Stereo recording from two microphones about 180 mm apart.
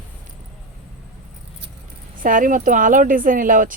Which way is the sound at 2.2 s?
50° right (ahead or behind).